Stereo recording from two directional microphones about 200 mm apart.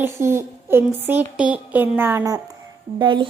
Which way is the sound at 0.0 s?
10° right (ahead or behind).